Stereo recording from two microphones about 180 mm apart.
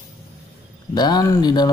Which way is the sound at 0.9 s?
20° left (ahead or behind).